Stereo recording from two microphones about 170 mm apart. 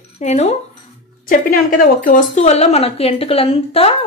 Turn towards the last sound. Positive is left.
turn(degrees=35)  # may be behind; listen again after turning